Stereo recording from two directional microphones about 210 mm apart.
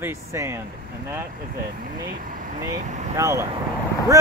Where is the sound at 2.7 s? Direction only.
35° right (ahead or behind).